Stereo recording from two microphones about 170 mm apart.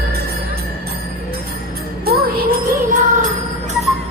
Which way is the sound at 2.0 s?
60° right (ahead or behind).